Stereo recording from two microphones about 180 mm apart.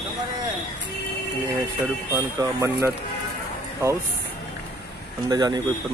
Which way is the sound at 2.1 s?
15° right (ahead or behind).